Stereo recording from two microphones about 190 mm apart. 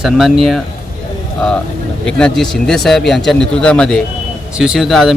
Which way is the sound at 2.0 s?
5° left (ahead or behind).